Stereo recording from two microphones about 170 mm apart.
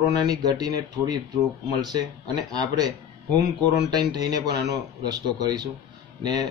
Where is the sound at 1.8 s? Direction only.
25° right (ahead or behind).